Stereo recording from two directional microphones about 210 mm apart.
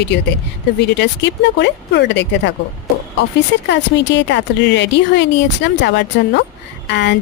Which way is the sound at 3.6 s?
60° left (ahead or behind).